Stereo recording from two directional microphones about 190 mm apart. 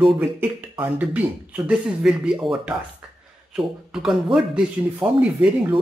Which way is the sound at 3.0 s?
5° right (ahead or behind).